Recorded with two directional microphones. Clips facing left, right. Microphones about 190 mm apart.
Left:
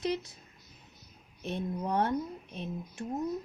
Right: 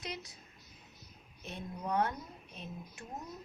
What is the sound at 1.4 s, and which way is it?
Speech, 30° left (ahead or behind).